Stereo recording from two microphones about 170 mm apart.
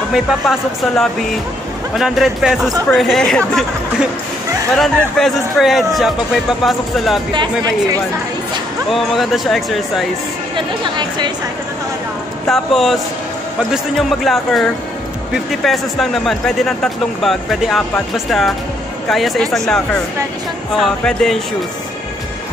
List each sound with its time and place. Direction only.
0.1 s speech: centre (ahead or behind)
8.9 s speech: centre (ahead or behind)
10.5 s speech: 25° right (ahead or behind)
12.4 s speech: centre (ahead or behind)